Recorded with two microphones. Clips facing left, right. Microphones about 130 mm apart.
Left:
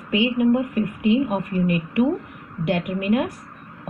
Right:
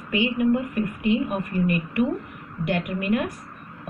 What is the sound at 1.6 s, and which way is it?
Speech, 90° left.